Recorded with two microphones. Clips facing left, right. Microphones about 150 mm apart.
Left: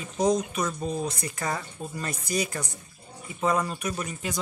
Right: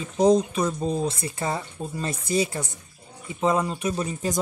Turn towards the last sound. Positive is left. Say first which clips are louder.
# right 5 dB
turn(degrees=-30)  # may be behind; listen again after turning